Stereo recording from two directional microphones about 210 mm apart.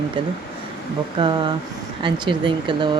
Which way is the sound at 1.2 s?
20° right (ahead or behind).